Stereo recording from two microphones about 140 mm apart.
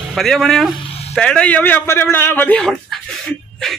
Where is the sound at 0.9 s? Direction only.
45° left (ahead or behind).